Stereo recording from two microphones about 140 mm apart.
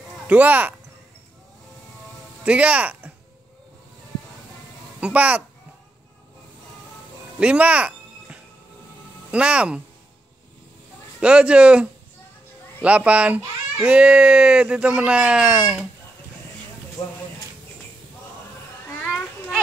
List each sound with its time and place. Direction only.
0.3 s speech: 10° right (ahead or behind)
2.4 s speech: 10° right (ahead or behind)
5.0 s speech: 10° right (ahead or behind)
7.3 s music: 10° right (ahead or behind)
9.3 s speech: 10° right (ahead or behind)
11.1 s speech: 5° right (ahead or behind)
17.0 s speech: 25° left (ahead or behind)
19.0 s a sound: 5° right (ahead or behind)